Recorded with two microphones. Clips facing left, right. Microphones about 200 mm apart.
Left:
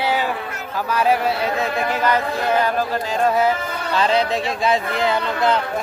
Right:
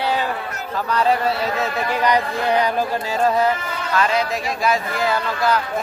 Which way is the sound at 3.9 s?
30° left (ahead or behind).